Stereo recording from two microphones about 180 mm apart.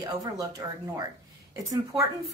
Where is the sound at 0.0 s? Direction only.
20° right (ahead or behind).